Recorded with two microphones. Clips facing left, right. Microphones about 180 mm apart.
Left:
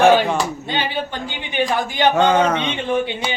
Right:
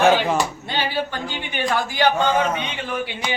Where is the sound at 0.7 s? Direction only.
20° left (ahead or behind).